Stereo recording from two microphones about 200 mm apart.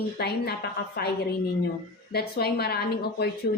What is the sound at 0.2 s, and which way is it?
Speech, 55° left (ahead or behind).